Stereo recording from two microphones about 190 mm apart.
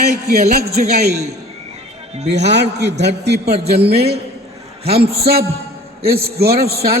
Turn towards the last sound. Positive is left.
turn(degrees=-55)  # may be behind; listen again after turning